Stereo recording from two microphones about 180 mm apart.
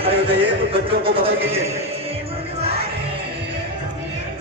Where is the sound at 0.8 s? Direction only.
30° right (ahead or behind).